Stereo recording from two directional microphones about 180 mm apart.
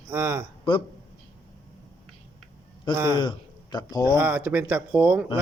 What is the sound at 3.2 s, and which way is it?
Speech, 25° left (ahead or behind).